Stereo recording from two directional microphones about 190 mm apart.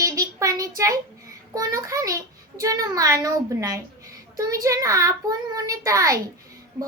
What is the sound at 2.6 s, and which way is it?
A child's voice, 20° right (ahead or behind).